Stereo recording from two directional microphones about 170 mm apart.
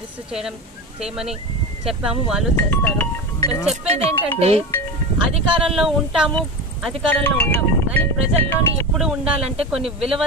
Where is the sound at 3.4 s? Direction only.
20° left (ahead or behind).